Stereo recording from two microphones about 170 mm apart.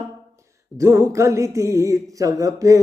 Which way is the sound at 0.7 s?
15° right (ahead or behind).